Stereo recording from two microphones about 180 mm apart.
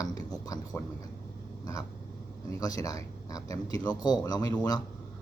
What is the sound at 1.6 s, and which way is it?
Vehicle, 20° left (ahead or behind).